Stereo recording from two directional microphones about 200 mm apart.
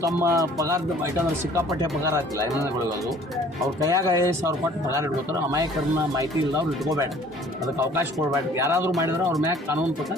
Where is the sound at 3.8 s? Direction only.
15° right (ahead or behind).